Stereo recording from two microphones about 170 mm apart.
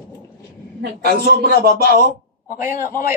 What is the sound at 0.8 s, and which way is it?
A man's voice, 65° right (ahead or behind).